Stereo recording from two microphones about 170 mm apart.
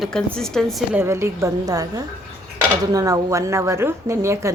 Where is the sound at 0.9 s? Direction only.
15° right (ahead or behind).